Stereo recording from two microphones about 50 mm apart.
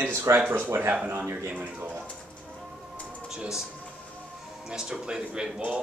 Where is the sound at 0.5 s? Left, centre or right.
Right.